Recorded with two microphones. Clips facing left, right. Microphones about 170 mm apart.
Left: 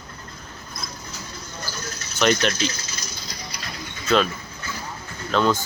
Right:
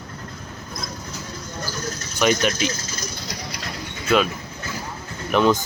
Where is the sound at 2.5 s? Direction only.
45° right (ahead or behind).